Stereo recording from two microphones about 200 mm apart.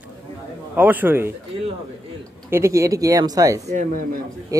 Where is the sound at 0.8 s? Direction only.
10° right (ahead or behind).